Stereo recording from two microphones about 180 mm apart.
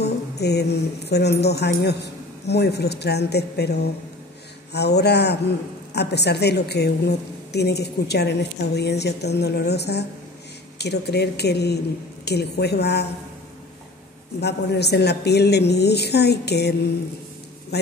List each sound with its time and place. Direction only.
0.0 s a woman's voice: 65° left (ahead or behind)
14.4 s a woman's voice: 65° left (ahead or behind)